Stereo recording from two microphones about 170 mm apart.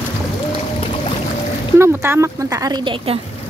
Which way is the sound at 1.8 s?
15° right (ahead or behind).